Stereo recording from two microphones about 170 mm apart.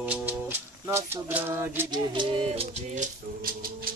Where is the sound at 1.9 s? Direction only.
30° right (ahead or behind).